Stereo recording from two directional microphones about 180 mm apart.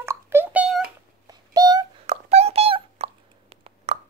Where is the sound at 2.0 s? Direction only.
35° right (ahead or behind).